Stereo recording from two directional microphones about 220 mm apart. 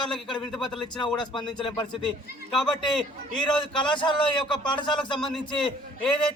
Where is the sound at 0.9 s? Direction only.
20° left (ahead or behind).